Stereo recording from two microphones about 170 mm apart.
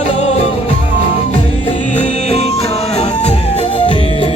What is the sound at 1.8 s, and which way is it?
Music, 45° left (ahead or behind).